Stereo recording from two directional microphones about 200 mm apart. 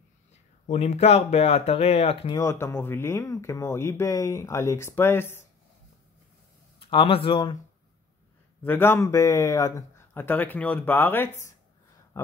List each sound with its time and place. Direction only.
0.7 s speech: 35° left (ahead or behind)
2.3 s speech: 15° left (ahead or behind)
6.8 s speech: 25° left (ahead or behind)
8.6 s speech: 10° left (ahead or behind)